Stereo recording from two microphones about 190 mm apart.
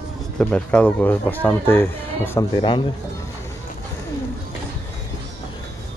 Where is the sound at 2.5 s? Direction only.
25° left (ahead or behind).